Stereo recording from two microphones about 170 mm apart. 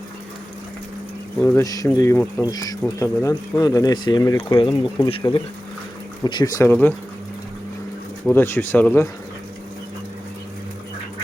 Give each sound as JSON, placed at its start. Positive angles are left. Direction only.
{"t": 1.4, "sound": "speech", "side_deg": 15}
{"t": 8.3, "sound": "speech", "side_deg": 15}